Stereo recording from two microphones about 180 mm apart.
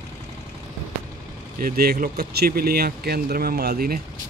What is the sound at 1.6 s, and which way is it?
Speech, 60° right (ahead or behind).